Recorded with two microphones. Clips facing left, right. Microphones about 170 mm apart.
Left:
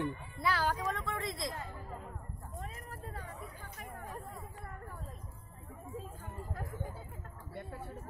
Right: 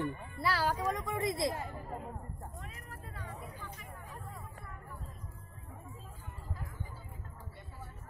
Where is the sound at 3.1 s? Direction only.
45° left (ahead or behind).